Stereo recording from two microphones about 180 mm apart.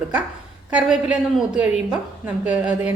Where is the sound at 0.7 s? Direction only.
5° right (ahead or behind).